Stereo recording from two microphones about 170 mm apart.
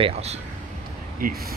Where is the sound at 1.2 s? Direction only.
60° right (ahead or behind).